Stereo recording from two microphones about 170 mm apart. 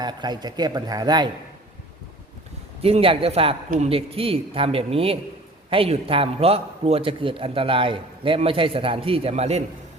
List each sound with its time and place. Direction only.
0.0 s a man's voice: 25° right (ahead or behind)
2.8 s a man's voice: 35° right (ahead or behind)